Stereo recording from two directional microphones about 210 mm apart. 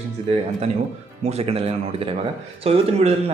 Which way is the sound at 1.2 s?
30° right (ahead or behind).